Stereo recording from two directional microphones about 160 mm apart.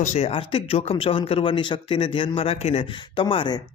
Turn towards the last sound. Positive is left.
turn(degrees=30)  # may be behind; listen again after turning